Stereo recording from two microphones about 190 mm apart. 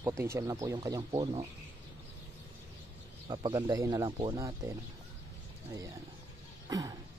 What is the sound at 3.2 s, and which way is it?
Speech, 20° right (ahead or behind).